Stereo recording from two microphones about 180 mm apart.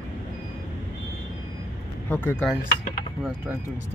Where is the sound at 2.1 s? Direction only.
10° left (ahead or behind).